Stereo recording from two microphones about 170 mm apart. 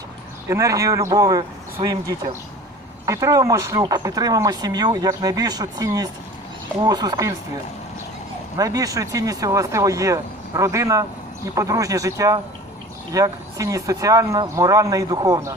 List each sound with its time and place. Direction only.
0.4 s speech: 15° right (ahead or behind)
3.1 s speech: 20° right (ahead or behind)
8.5 s speech: 20° right (ahead or behind)